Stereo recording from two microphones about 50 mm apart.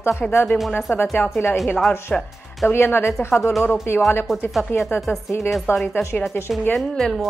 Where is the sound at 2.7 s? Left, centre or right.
Left.